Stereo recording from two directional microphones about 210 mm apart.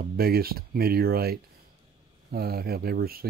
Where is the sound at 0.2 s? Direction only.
45° right (ahead or behind).